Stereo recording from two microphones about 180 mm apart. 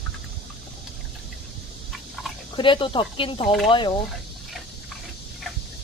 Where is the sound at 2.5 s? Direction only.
25° left (ahead or behind).